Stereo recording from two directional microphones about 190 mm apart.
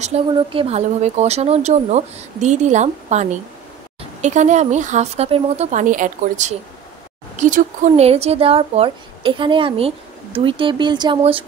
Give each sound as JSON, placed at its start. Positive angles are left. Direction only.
{"t": 0.0, "sound": "a woman's voice", "side_deg": -30}